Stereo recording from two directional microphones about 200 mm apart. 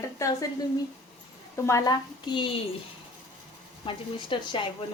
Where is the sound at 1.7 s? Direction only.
20° left (ahead or behind).